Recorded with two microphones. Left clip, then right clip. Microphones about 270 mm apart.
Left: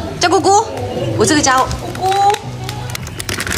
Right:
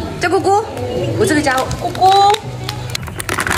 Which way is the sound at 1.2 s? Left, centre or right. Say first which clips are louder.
Left 3 dB; centre.